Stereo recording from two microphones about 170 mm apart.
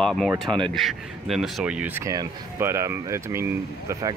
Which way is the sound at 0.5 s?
30° right (ahead or behind).